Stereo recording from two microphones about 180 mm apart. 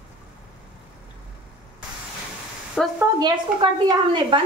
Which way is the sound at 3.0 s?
25° right (ahead or behind).